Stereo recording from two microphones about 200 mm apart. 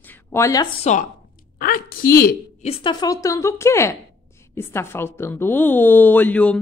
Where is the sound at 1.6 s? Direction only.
45° left (ahead or behind).